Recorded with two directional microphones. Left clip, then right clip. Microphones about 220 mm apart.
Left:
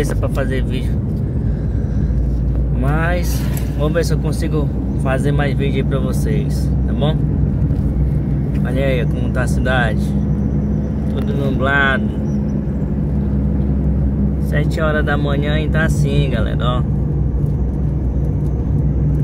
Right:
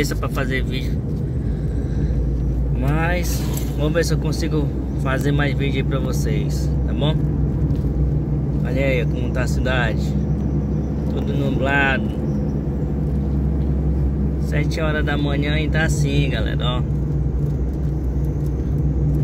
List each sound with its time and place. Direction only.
2.9 s speech: centre (ahead or behind)
8.7 s speech: centre (ahead or behind)
11.4 s speech: 5° left (ahead or behind)
14.5 s speech: 10° left (ahead or behind)